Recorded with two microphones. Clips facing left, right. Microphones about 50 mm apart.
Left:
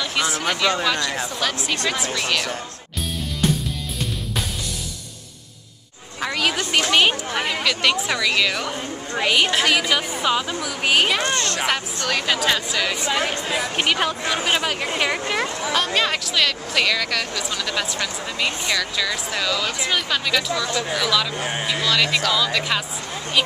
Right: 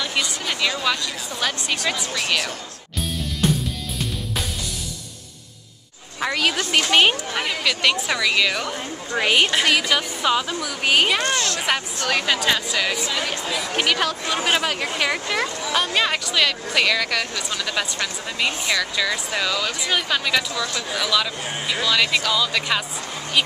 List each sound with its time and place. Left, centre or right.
0.0 s a sound: centre
0.5 s speech: centre
6.2 s speech: centre
13.3 s speech: left
13.7 s speech: centre
14.3 s speech: centre
15.7 s speech: centre